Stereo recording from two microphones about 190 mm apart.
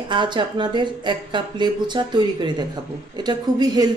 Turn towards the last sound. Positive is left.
turn(degrees=-20)  # may be behind; listen again after turning